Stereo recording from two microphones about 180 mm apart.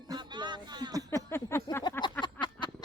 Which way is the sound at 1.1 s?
15° left (ahead or behind).